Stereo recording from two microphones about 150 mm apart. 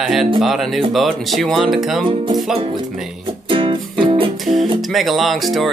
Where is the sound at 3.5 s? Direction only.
35° right (ahead or behind).